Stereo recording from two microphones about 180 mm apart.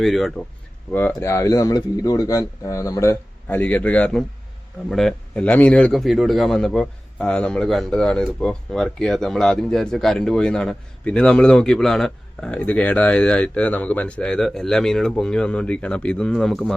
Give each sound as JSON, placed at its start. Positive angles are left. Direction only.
{"t": 0.0, "sound": "a man's voice", "side_deg": 0}
{"t": 0.9, "sound": "a man's voice", "side_deg": 10}